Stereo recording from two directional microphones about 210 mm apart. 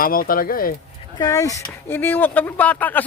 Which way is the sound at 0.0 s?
45° left (ahead or behind).